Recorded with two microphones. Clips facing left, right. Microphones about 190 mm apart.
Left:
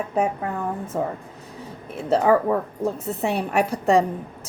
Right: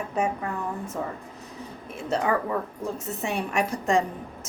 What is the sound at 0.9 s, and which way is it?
Speech, 45° left (ahead or behind).